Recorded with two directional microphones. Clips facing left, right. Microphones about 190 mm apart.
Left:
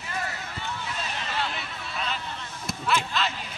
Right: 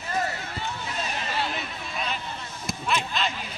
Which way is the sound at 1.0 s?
15° right (ahead or behind).